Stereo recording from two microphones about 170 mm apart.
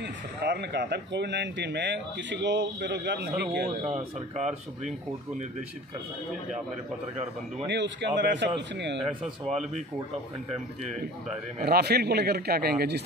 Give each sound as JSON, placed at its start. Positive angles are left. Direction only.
{"t": 0.0, "sound": "speech", "side_deg": -80}
{"t": 3.8, "sound": "speech", "side_deg": -40}
{"t": 7.6, "sound": "speech", "side_deg": -90}
{"t": 11.6, "sound": "speech", "side_deg": -70}